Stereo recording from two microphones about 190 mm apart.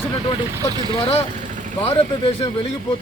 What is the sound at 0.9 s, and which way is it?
Speech, 30° left (ahead or behind).